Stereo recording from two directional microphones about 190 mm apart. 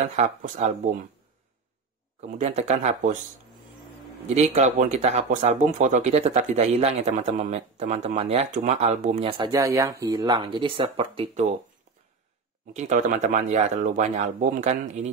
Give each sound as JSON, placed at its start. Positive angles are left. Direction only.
{"t": 0.1, "sound": "speech", "side_deg": -35}
{"t": 2.2, "sound": "speech", "side_deg": -35}
{"t": 4.4, "sound": "speech", "side_deg": -40}
{"t": 12.7, "sound": "speech", "side_deg": -40}